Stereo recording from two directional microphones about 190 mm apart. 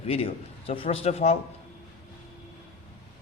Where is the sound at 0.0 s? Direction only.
30° left (ahead or behind).